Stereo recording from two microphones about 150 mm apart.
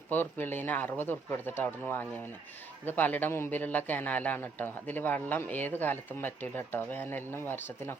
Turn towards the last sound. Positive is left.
turn(degrees=15)  # may be behind; listen again after turning